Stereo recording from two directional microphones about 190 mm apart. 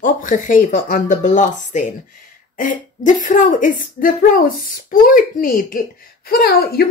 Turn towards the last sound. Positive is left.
turn(degrees=55)  # may be behind; listen again after turning